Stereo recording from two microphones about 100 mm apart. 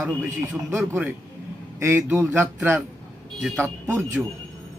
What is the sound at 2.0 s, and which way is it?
Speech, 20° right (ahead or behind).